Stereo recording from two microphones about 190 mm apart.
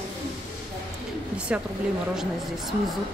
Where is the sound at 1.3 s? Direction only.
5° right (ahead or behind).